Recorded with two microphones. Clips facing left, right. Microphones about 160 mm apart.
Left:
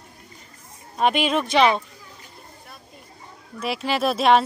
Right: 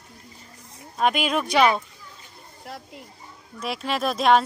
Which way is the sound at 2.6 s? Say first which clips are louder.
Right 7 dB; 85° right.